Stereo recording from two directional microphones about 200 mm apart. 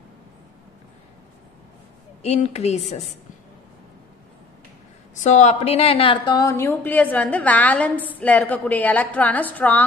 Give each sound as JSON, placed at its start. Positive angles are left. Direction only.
{"t": 2.2, "sound": "a woman's voice", "side_deg": 30}
{"t": 5.1, "sound": "a woman's voice", "side_deg": 35}